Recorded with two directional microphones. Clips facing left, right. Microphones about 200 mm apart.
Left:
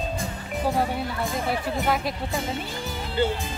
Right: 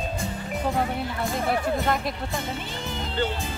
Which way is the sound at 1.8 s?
5° left (ahead or behind).